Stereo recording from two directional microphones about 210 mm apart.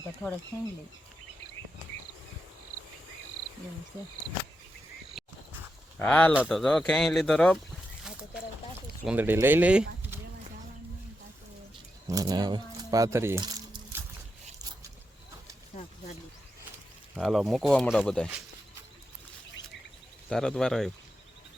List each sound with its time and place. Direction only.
0.0 s speech: 5° left (ahead or behind)
5.2 s frog: centre (ahead or behind)
6.0 s speech: 10° left (ahead or behind)
9.0 s speech: 10° right (ahead or behind)
12.0 s speech: 15° right (ahead or behind)
17.2 s speech: centre (ahead or behind)
20.3 s speech: 5° left (ahead or behind)